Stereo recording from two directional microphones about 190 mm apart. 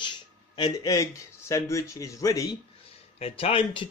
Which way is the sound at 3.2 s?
30° left (ahead or behind).